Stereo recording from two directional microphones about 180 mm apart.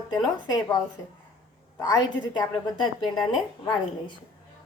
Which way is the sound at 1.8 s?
20° left (ahead or behind).